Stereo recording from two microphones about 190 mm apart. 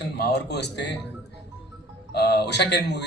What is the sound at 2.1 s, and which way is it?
Speech, 60° left (ahead or behind).